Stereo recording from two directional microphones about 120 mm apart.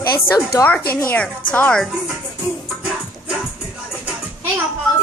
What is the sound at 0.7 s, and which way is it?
A woman's voice, 15° left (ahead or behind).